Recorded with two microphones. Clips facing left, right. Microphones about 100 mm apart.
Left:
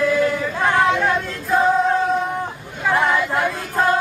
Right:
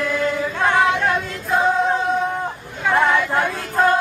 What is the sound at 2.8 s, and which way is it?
Choir, centre (ahead or behind).